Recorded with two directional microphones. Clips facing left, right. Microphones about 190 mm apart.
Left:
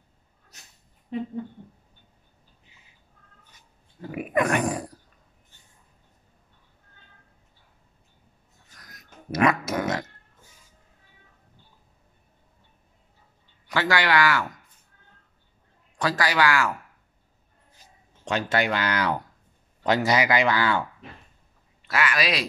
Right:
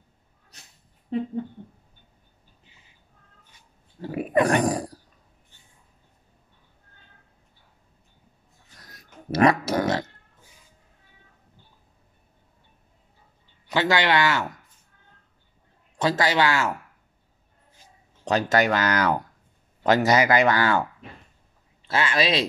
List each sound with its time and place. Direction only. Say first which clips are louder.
4.0 s a sound: right 3 dB; 35° right (ahead or behind)
8.7 s a sound: right 2 dB; 30° right (ahead or behind)
13.7 s speech: right 2 dB; 20° right (ahead or behind)
16.0 s speech: right 2 dB; 25° right (ahead or behind)
18.2 s speech: right 4 dB; 40° right (ahead or behind)
21.8 s speech: right 2 dB; 25° right (ahead or behind)